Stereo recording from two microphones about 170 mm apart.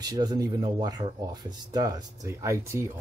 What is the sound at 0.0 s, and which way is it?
Speech, 25° right (ahead or behind).